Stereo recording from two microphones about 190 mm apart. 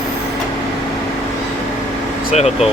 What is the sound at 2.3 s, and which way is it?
Speech, 35° left (ahead or behind).